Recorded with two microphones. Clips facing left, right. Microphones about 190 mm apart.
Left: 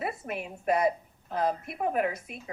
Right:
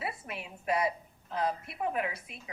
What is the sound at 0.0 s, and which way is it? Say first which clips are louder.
A woman's voice: left 5 dB; 50° left (ahead or behind).